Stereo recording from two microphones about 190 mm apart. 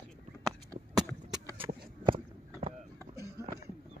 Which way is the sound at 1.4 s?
15° right (ahead or behind).